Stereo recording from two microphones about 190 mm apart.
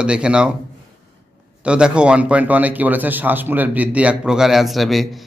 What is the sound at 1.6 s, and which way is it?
A man's voice, 5° right (ahead or behind).